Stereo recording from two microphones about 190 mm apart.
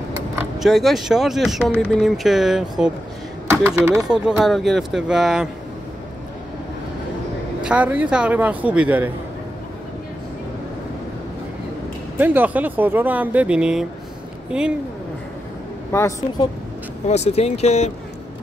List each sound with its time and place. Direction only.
0.4 s speech: centre (ahead or behind)
3.6 s speech: 10° right (ahead or behind)
4.1 s speech: centre (ahead or behind)
7.6 s speech: 5° right (ahead or behind)
12.2 s speech: 10° right (ahead or behind)
15.9 s a woman's voice: 15° left (ahead or behind)
17.1 s speech: 35° left (ahead or behind)